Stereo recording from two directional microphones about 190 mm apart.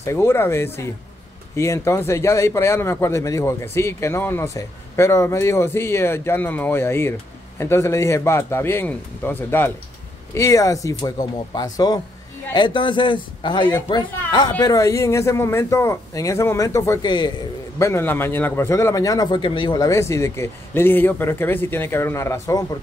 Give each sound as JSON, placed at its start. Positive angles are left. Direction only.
{"t": 0.0, "sound": "a man's voice", "side_deg": 15}